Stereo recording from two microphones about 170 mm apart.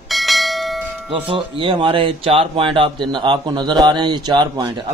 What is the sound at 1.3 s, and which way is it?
Speech, 30° right (ahead or behind).